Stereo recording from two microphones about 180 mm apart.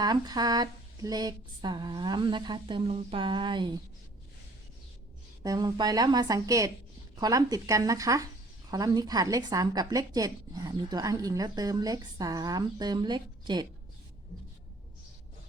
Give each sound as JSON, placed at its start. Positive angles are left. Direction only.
{"t": 0.0, "sound": "a woman's voice", "side_deg": -20}
{"t": 5.4, "sound": "a woman's voice", "side_deg": -20}